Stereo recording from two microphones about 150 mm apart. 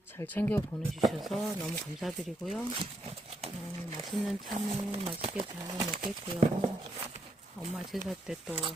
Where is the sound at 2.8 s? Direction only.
40° right (ahead or behind).